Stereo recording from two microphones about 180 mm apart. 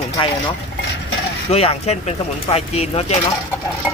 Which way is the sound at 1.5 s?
35° left (ahead or behind).